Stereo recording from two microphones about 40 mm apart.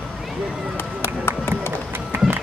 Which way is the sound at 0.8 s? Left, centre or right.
Left.